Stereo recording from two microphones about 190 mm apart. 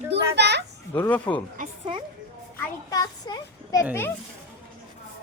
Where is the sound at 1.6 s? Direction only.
45° right (ahead or behind).